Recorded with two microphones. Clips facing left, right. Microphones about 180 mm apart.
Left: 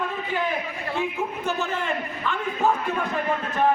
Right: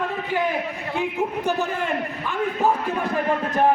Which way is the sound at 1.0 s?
15° right (ahead or behind).